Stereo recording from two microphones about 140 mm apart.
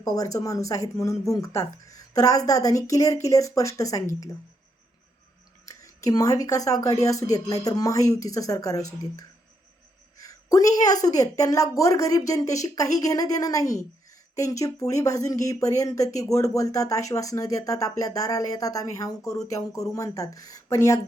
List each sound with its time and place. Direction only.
0.0 s speech: 25° left (ahead or behind)
5.6 s speech: 25° left (ahead or behind)
10.2 s speech: 25° left (ahead or behind)